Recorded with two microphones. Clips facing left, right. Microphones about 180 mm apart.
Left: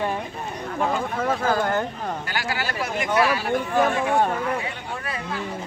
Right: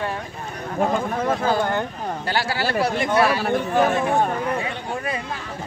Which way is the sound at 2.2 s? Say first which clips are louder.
Right 5 dB; 35° right (ahead or behind).